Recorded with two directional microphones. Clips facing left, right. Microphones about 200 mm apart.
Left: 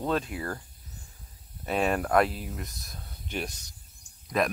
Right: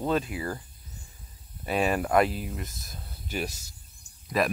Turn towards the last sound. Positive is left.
turn(degrees=-5)  # may be behind; listen again after turning